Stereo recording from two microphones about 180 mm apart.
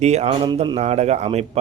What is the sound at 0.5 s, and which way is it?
Speech, 25° right (ahead or behind).